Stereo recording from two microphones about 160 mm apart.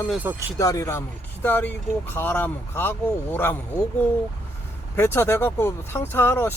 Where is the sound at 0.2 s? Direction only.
15° right (ahead or behind).